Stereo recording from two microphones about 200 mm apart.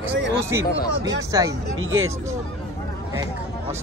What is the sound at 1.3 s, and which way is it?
Speech, 15° right (ahead or behind).